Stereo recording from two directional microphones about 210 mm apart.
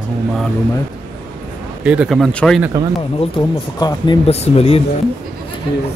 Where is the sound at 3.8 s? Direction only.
20° left (ahead or behind).